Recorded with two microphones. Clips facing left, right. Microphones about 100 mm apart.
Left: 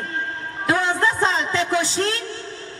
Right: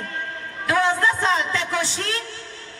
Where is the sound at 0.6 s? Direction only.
30° left (ahead or behind).